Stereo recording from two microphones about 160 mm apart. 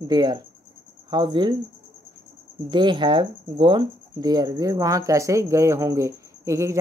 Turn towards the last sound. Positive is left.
turn(degrees=-20)  # may be behind; listen again after turning